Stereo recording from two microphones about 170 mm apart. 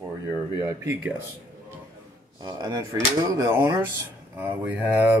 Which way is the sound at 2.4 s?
25° right (ahead or behind).